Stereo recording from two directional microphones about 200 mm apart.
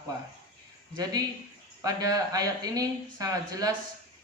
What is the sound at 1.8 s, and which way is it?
A man's voice, 20° right (ahead or behind).